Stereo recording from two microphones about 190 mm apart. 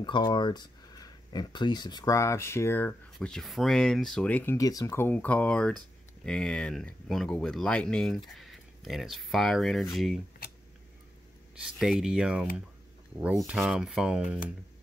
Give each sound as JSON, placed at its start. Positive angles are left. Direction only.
{"t": 0.0, "sound": "speech", "side_deg": 25}
{"t": 11.6, "sound": "speech", "side_deg": -5}